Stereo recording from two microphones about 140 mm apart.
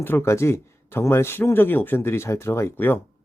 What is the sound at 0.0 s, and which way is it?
Speech, 15° left (ahead or behind).